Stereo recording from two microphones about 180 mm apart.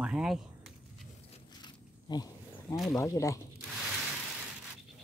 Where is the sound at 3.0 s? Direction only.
20° left (ahead or behind).